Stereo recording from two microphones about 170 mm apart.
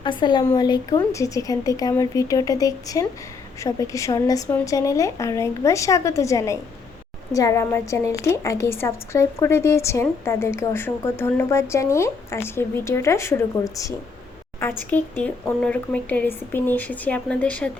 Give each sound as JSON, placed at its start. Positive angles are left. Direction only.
{"t": 0.0, "sound": "a woman's voice", "side_deg": 25}